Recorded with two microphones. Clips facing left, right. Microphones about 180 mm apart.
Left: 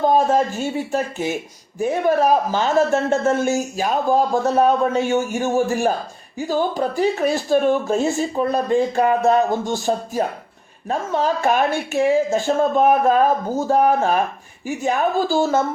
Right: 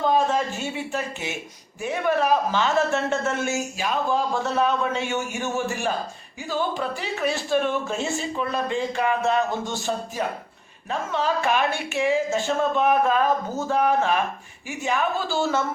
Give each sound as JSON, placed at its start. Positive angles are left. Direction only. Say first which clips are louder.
{"t": 0.0, "sound": "a man's voice", "louder": "left 5 dB", "side_deg": 40}